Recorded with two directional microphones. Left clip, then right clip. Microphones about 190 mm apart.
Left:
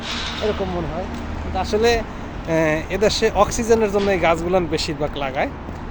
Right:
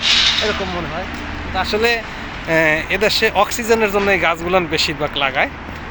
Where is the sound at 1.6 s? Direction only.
15° left (ahead or behind).